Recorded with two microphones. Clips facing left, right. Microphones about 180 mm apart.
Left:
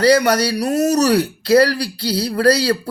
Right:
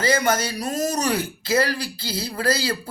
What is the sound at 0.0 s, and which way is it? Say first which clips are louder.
Speech: left 7 dB; 70° left (ahead or behind).